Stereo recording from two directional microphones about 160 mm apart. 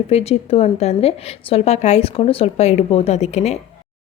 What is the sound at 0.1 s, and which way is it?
A woman's voice, 40° left (ahead or behind).